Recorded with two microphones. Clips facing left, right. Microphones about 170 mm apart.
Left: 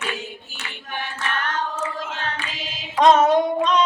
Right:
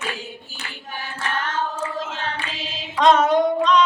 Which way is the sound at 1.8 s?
25° right (ahead or behind).